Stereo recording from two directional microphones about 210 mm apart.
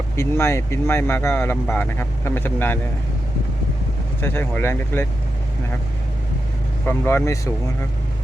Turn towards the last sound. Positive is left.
turn(degrees=15)  # may be behind; listen again after turning